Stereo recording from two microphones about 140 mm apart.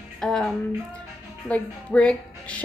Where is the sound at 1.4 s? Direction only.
10° left (ahead or behind).